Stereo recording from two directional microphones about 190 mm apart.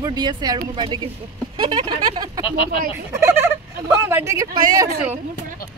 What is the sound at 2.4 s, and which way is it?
Speech, 30° left (ahead or behind).